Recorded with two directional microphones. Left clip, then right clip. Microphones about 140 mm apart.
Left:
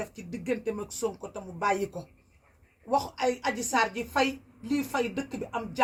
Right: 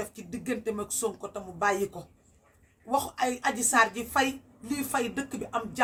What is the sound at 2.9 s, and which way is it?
A woman's voice, 20° right (ahead or behind).